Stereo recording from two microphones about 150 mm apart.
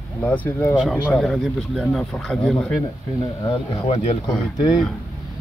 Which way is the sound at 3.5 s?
40° left (ahead or behind).